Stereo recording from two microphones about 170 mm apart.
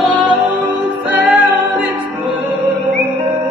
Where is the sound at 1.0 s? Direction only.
10° right (ahead or behind).